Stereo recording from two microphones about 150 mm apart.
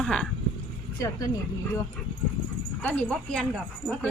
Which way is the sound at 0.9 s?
20° left (ahead or behind).